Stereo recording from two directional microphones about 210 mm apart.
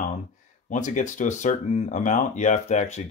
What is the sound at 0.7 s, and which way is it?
Speech, 35° left (ahead or behind).